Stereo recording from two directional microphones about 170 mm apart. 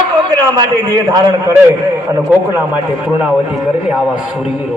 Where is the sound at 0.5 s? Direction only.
20° right (ahead or behind).